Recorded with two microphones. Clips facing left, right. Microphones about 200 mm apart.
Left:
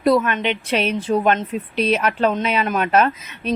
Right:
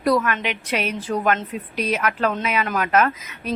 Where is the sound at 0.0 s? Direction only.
25° left (ahead or behind).